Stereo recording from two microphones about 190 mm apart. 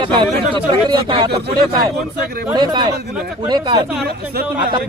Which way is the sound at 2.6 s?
20° right (ahead or behind).